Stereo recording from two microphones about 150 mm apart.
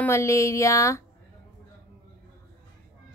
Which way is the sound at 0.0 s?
20° left (ahead or behind).